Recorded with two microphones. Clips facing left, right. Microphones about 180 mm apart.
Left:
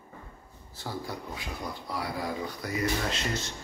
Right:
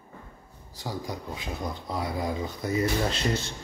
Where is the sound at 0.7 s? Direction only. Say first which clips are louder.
Right 2 dB; 15° right (ahead or behind).